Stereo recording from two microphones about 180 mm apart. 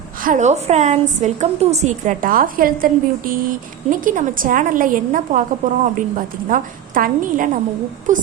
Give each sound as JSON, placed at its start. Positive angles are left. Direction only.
{"t": 0.2, "sound": "a woman's voice", "side_deg": -45}